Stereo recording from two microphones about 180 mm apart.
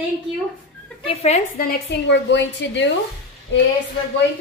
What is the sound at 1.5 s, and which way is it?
A woman's voice, 60° left (ahead or behind).